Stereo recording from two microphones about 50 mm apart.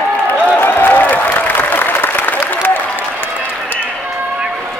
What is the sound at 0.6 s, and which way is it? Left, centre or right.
Applause, left.